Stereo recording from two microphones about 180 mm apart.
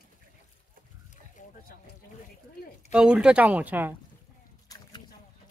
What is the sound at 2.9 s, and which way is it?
Speech, 5° right (ahead or behind).